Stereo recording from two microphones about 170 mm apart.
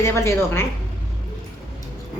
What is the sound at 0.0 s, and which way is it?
Speech, 15° left (ahead or behind).